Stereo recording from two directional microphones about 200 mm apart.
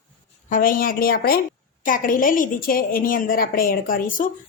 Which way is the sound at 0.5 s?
45° left (ahead or behind).